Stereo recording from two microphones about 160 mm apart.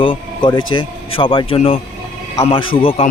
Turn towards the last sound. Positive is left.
turn(degrees=35)  # may be behind; listen again after turning